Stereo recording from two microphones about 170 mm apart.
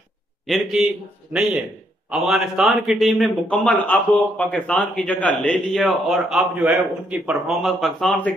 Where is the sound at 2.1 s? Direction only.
Centre (ahead or behind).